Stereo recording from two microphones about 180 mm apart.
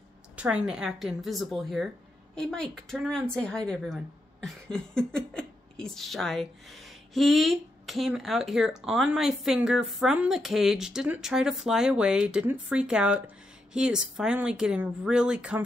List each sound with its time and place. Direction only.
0.4 s speech: 5° right (ahead or behind)